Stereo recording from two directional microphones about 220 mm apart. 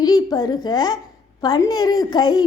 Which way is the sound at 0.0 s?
15° left (ahead or behind).